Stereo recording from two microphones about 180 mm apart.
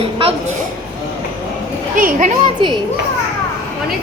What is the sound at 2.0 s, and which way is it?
Speech, 45° right (ahead or behind).